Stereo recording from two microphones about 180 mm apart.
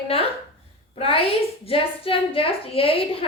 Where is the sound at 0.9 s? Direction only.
30° left (ahead or behind).